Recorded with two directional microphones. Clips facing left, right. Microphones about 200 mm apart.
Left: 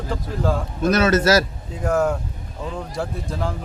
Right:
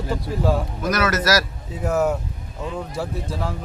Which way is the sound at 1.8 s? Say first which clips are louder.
Left 1 dB; 5° right (ahead or behind).